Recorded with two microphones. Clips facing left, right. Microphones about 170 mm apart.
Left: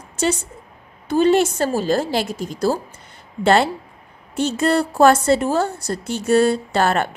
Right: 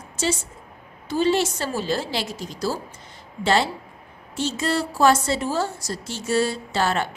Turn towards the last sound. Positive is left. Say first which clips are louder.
# left 5 dB
turn(degrees=55)  # may be behind; listen again after turning